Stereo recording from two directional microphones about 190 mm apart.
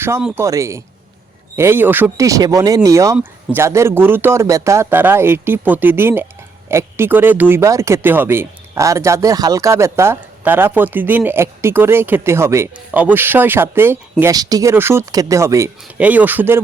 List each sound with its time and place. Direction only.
0.0 s speech: 10° right (ahead or behind)